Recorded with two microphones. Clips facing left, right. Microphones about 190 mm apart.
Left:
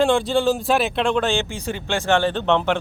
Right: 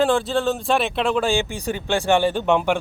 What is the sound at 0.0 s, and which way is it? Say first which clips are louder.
Speech: left 1 dB; centre (ahead or behind).